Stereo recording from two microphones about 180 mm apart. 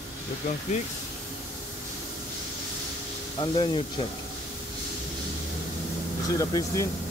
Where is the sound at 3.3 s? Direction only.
30° left (ahead or behind).